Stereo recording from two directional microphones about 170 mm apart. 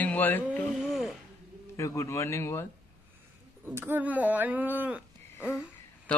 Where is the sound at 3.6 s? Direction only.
15° right (ahead or behind).